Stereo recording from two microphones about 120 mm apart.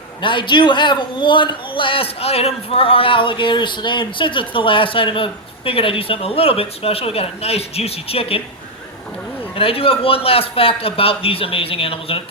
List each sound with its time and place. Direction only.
0.2 s a man's voice: 40° left (ahead or behind)
9.6 s a man's voice: 50° left (ahead or behind)